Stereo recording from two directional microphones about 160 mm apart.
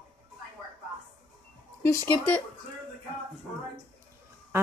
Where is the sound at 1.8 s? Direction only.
15° left (ahead or behind).